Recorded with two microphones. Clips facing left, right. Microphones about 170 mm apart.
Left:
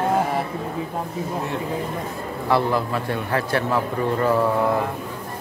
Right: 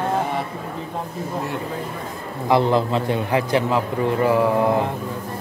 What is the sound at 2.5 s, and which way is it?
A man's voice, 20° right (ahead or behind).